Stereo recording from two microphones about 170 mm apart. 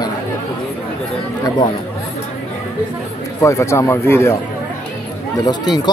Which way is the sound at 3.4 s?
15° left (ahead or behind).